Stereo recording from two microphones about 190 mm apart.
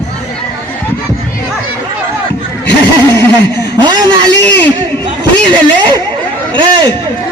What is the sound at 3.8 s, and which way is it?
Speech, 25° right (ahead or behind).